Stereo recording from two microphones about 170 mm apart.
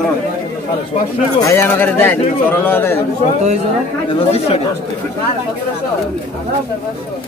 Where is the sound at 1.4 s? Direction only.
15° left (ahead or behind).